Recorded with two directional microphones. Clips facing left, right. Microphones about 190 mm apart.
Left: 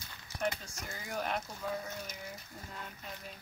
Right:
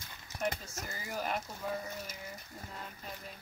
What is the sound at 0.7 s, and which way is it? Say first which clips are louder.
Speech: right 1 dB; 5° right (ahead or behind).